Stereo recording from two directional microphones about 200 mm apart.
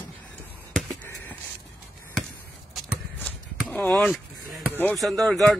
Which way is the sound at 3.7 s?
5° left (ahead or behind).